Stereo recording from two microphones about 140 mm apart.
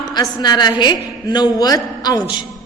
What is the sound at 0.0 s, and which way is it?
A woman's voice, 30° left (ahead or behind).